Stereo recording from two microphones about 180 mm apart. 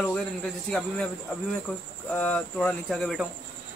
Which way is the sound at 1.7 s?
5° left (ahead or behind).